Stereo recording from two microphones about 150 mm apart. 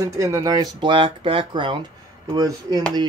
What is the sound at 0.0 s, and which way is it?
Speech, 25° right (ahead or behind).